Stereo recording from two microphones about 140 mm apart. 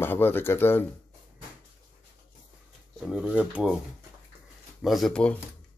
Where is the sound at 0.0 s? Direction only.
15° left (ahead or behind).